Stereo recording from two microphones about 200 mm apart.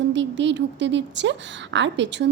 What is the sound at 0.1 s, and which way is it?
A woman's voice, 65° right (ahead or behind).